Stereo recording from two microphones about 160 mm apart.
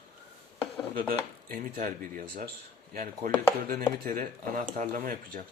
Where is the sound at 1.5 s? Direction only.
65° right (ahead or behind).